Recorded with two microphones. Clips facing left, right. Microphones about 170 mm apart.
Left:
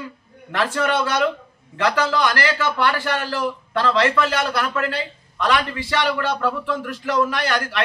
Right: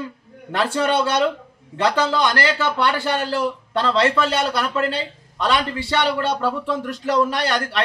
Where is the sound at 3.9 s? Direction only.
30° right (ahead or behind).